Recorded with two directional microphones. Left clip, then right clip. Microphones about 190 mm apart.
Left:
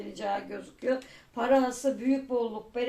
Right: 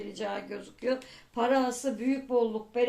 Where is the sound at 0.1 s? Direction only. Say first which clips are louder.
Left 4 dB; 35° right (ahead or behind).